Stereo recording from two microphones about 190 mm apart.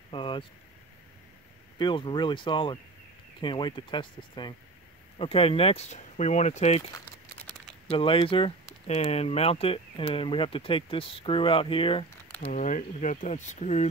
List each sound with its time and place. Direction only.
0.1 s speech: 25° left (ahead or behind)
1.8 s speech: 25° left (ahead or behind)
7.9 s speech: 30° left (ahead or behind)
12.4 s speech: 40° left (ahead or behind)